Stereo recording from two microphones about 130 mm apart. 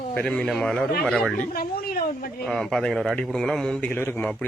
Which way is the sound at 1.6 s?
90° left.